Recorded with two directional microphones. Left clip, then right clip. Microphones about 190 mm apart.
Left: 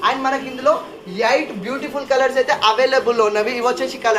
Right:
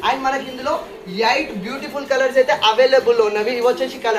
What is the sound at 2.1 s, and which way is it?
Speech, 45° left (ahead or behind).